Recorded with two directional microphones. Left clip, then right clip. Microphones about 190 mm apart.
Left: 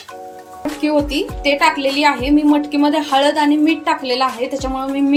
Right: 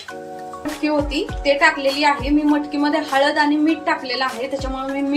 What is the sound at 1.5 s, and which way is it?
A woman's voice, 40° left (ahead or behind).